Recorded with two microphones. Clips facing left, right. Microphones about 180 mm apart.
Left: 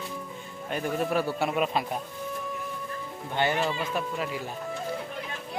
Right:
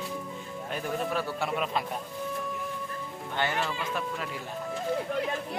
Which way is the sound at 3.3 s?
20° left (ahead or behind).